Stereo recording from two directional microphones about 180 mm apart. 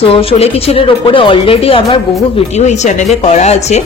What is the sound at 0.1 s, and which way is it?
Speech, 30° left (ahead or behind).